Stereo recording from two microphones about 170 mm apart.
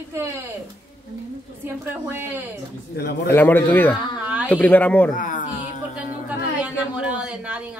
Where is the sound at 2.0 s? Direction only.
10° right (ahead or behind).